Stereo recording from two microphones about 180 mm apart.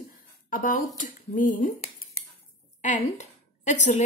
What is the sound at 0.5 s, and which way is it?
Speech, 50° left (ahead or behind).